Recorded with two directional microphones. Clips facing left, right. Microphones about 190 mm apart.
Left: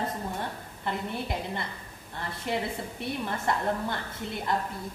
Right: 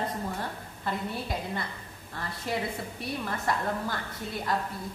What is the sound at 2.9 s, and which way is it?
A woman's voice, 25° left (ahead or behind).